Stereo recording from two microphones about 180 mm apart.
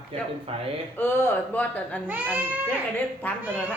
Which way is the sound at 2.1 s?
10° right (ahead or behind).